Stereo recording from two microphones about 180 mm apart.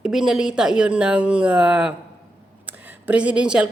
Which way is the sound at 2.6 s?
10° right (ahead or behind).